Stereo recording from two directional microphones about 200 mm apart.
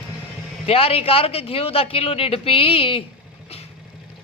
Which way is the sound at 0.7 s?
30° left (ahead or behind).